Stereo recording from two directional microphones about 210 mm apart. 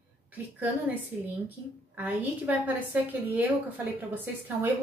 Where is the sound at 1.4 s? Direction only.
10° right (ahead or behind).